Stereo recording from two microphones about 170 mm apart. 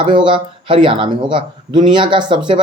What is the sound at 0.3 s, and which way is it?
Speech, 30° right (ahead or behind).